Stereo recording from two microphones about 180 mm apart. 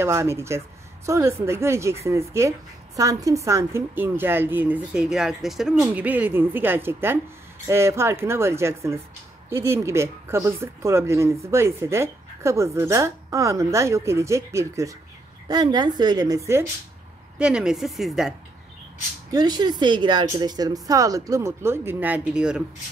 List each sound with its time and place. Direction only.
0.0 s speech: 15° right (ahead or behind)
17.4 s speech: 5° right (ahead or behind)
19.3 s speech: 25° right (ahead or behind); by 22.6 s 5° right (ahead or behind)